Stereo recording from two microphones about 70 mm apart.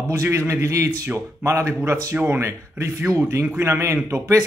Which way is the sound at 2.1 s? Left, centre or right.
Right.